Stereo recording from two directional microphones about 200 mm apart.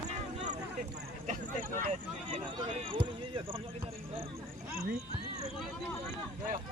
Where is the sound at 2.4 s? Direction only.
25° right (ahead or behind).